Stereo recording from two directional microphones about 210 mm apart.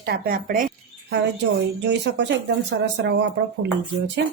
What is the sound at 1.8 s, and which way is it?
Speech, 55° right (ahead or behind).